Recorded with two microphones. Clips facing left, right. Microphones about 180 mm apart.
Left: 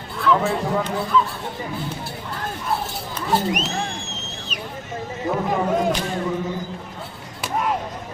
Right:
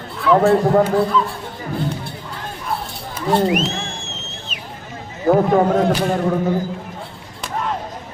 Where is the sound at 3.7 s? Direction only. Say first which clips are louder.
Even; 40° left (ahead or behind).